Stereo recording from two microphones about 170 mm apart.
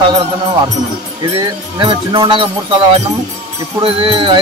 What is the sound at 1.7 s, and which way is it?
Speech, 30° right (ahead or behind).